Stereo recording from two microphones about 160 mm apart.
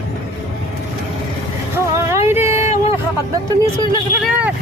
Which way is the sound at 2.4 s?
45° left (ahead or behind).